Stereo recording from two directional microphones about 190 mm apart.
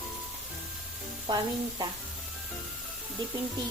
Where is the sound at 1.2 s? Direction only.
20° right (ahead or behind).